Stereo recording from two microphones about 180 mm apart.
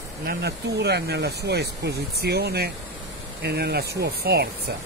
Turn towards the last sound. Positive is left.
turn(degrees=-60)  # may be behind; listen again after turning